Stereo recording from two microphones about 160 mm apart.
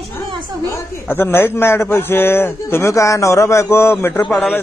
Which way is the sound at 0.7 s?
15° left (ahead or behind).